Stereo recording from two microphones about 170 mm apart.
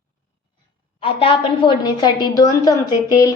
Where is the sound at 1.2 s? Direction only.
25° left (ahead or behind).